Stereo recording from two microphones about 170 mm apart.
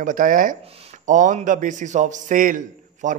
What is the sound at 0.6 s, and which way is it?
Speech, 35° right (ahead or behind).